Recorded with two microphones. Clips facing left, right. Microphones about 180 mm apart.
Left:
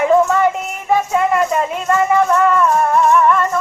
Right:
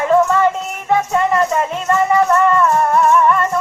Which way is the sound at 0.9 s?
5° left (ahead or behind).